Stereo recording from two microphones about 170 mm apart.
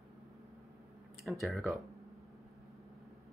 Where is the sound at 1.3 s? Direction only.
Centre (ahead or behind).